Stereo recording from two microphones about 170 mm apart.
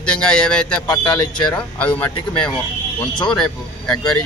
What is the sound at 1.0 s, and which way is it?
Speech, 25° left (ahead or behind).